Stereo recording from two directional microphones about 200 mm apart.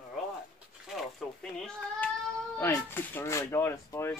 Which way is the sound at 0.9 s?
5° left (ahead or behind).